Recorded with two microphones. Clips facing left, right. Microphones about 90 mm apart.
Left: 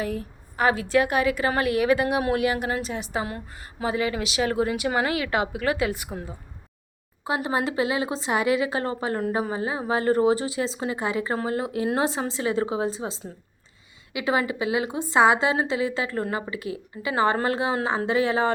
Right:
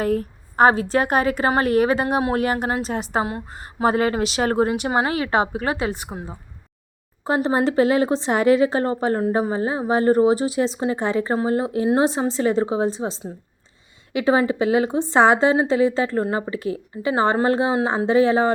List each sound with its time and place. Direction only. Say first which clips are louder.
0.0 s a woman's voice: right 7 dB; 50° right (ahead or behind)
3.2 s a woman's voice: right 5 dB; 30° right (ahead or behind)
7.3 s a woman's voice: right 6 dB; 35° right (ahead or behind)